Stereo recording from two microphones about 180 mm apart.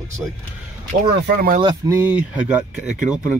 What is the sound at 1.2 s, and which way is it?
Speech, 55° right (ahead or behind).